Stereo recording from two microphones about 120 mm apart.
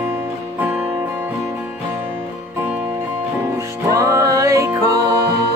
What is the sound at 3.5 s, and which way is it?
Music, 25° right (ahead or behind).